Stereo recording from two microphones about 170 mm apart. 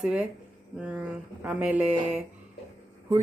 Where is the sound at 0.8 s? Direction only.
5° right (ahead or behind).